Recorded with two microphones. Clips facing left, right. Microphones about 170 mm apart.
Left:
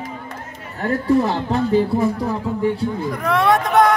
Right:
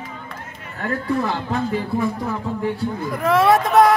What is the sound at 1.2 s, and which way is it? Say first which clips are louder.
Speech: left 4 dB; 35° left (ahead or behind).